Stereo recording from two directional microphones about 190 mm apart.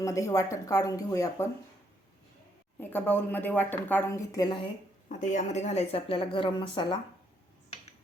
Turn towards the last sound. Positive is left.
turn(degrees=25)  # may be behind; listen again after turning